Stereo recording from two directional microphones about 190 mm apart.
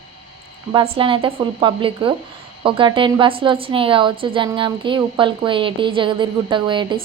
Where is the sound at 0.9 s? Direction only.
25° right (ahead or behind).